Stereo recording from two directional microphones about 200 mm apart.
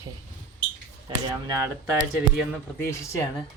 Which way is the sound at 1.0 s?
15° right (ahead or behind).